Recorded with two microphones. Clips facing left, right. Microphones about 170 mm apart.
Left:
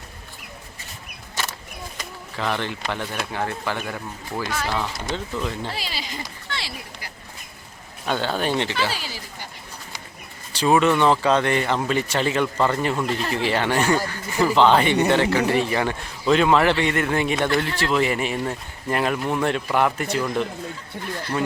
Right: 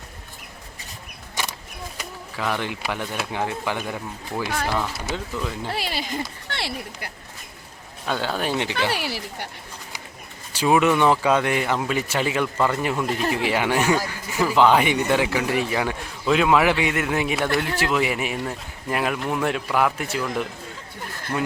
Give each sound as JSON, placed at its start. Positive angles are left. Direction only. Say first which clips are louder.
{"t": 2.0, "sound": "a man's voice", "louder": "left 1 dB", "side_deg": -5}
{"t": 5.7, "sound": "speech", "louder": "right 5 dB", "side_deg": -55}
{"t": 8.0, "sound": "a man's voice", "louder": "left 2 dB", "side_deg": 0}
{"t": 8.9, "sound": "speech", "louder": "right 5 dB", "side_deg": -65}
{"t": 10.5, "sound": "a man's voice", "louder": "even", "side_deg": -10}